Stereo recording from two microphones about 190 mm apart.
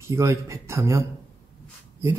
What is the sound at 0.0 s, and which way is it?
Speech, 15° right (ahead or behind).